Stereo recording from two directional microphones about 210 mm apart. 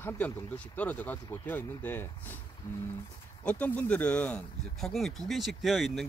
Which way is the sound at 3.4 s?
5° left (ahead or behind).